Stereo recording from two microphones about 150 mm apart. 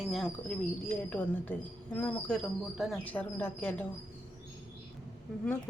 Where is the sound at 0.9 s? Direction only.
10° left (ahead or behind).